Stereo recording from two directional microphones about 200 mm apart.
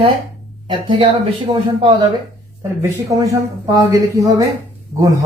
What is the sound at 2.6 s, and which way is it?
A woman's voice, 15° right (ahead or behind).